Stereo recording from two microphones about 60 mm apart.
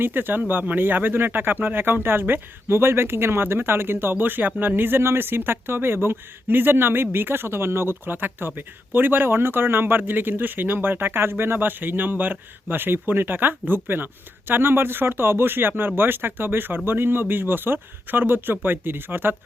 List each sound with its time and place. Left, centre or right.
0.0 s speech: right